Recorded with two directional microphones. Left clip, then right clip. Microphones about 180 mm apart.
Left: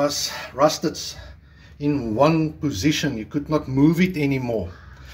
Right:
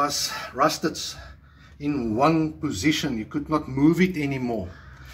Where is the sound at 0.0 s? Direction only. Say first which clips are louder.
Left 2 dB; 45° left (ahead or behind).